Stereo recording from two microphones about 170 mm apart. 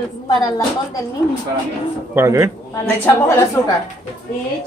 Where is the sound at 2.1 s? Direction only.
20° right (ahead or behind).